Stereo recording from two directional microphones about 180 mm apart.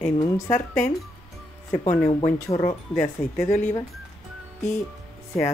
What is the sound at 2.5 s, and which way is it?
Speech, 25° left (ahead or behind).